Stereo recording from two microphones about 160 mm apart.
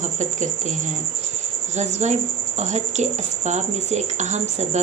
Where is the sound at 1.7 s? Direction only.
45° right (ahead or behind).